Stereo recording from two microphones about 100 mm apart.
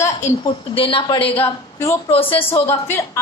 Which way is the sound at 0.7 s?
60° left (ahead or behind).